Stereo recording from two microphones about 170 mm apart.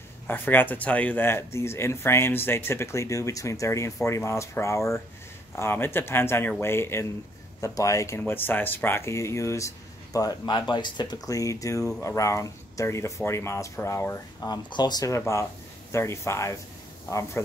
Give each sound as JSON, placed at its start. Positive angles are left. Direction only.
{"t": 0.3, "sound": "speech", "side_deg": 10}